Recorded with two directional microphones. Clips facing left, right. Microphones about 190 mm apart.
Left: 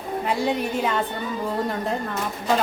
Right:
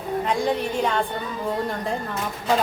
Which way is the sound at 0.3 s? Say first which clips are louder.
Left 1 dB; 5° left (ahead or behind).